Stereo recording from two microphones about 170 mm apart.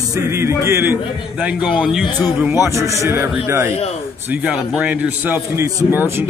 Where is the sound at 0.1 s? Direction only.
15° right (ahead or behind).